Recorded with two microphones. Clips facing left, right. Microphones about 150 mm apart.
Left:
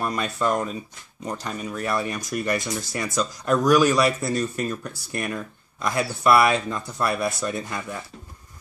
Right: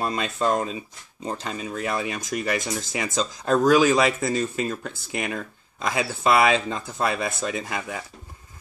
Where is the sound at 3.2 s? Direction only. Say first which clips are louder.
Even; 30° right (ahead or behind).